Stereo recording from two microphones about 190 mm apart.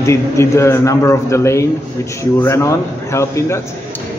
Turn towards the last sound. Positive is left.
turn(degrees=15)  # may be behind; listen again after turning